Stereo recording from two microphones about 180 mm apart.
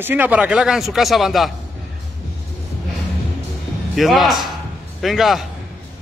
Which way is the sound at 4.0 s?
Centre (ahead or behind).